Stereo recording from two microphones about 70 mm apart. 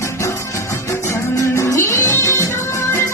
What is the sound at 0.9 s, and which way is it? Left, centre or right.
Music, left.